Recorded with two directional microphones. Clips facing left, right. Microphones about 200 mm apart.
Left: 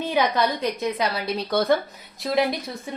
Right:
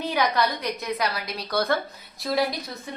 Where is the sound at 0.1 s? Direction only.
25° left (ahead or behind).